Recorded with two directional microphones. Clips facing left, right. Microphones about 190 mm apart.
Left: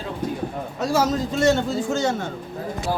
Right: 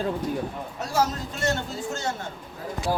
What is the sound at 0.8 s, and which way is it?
A man's voice, 90° left.